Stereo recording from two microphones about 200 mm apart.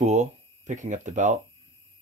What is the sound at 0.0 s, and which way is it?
Speech, 35° right (ahead or behind).